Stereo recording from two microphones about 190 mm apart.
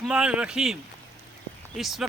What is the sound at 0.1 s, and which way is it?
Speech, 5° right (ahead or behind).